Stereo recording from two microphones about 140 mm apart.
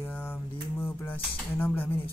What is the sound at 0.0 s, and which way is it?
Cutlery, 15° left (ahead or behind).